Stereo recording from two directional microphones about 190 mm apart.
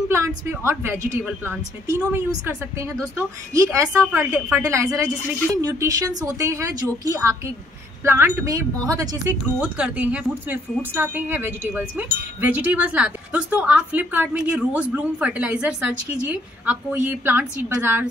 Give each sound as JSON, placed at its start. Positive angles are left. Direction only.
{"t": 0.5, "sound": "speech", "side_deg": -15}
{"t": 9.6, "sound": "speech", "side_deg": -5}